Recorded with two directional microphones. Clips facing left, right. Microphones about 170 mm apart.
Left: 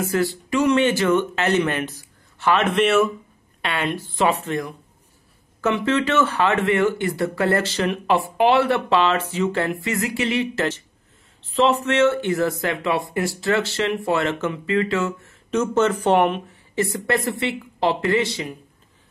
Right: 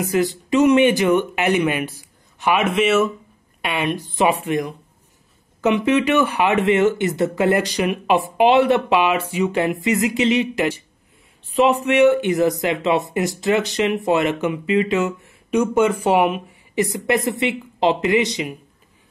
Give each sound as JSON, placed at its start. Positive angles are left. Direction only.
{"t": 0.0, "sound": "speech", "side_deg": -15}
{"t": 3.6, "sound": "speech", "side_deg": -15}